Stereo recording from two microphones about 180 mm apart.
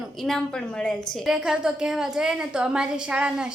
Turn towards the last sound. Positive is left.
turn(degrees=-5)  # may be behind; listen again after turning